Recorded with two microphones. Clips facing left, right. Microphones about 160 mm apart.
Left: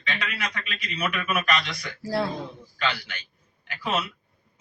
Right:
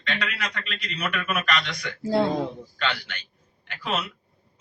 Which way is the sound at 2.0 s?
25° right (ahead or behind).